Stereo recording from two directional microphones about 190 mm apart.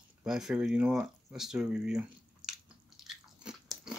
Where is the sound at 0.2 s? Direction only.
Centre (ahead or behind).